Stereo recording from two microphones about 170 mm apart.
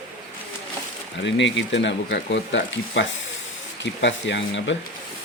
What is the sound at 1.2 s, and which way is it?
Speech, 90° left.